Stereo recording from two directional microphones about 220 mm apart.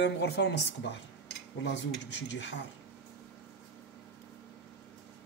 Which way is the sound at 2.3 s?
55° left (ahead or behind).